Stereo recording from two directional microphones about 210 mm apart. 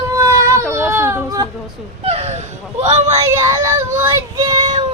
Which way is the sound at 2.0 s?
30° right (ahead or behind).